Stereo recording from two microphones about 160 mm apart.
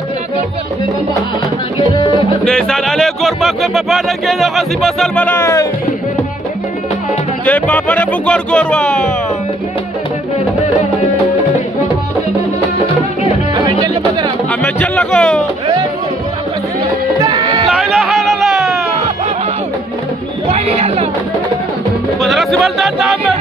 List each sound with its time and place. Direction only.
1.8 s music: 30° left (ahead or behind)
2.4 s speech: 5° left (ahead or behind)
7.4 s speech: 10° left (ahead or behind)
14.6 s speech: 5° left (ahead or behind)
15.6 s music: 25° right (ahead or behind)
17.6 s music: centre (ahead or behind)
20.4 s speech: 40° right (ahead or behind)
22.2 s speech: centre (ahead or behind)